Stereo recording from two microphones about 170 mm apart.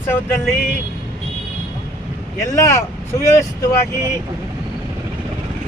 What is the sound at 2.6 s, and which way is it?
Speech, 15° left (ahead or behind).